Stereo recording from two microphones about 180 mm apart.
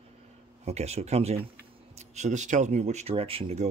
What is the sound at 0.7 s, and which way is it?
Speech, 35° right (ahead or behind).